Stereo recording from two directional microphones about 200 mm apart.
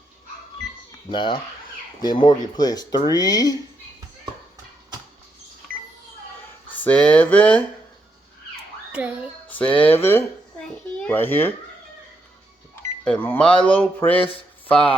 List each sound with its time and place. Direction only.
1.1 s speech: 25° left (ahead or behind)
5.7 s cash register: 45° right (ahead or behind)
6.7 s speech: 10° left (ahead or behind)
8.9 s a child's voice: 5° right (ahead or behind)
9.5 s a child's voice: 5° left (ahead or behind)
13.1 s speech: 10° left (ahead or behind)